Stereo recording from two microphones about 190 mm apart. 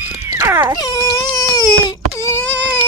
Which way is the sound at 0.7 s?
20° left (ahead or behind).